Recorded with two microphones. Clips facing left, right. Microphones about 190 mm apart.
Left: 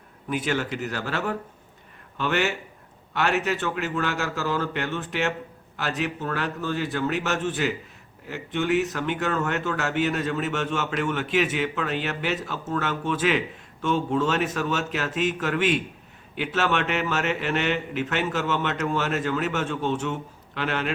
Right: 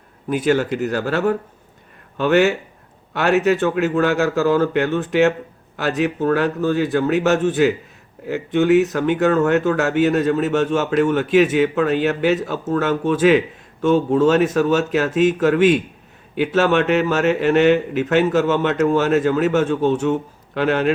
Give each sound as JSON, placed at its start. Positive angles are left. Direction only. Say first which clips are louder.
{"t": 0.3, "sound": "speech", "louder": "right 9 dB", "side_deg": -40}